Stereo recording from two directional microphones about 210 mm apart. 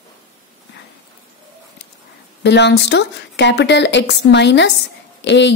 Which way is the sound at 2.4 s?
55° left (ahead or behind).